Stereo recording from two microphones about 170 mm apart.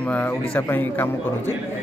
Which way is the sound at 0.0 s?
10° left (ahead or behind).